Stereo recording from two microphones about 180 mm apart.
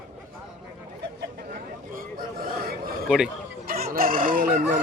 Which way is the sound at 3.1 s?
5° right (ahead or behind).